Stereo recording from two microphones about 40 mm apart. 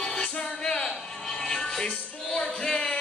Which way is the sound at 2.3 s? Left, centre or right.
Centre.